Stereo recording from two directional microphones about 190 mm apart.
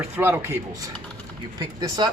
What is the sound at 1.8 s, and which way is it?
Speech, 20° right (ahead or behind).